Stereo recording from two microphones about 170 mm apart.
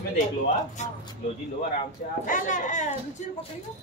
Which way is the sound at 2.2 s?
50° left (ahead or behind).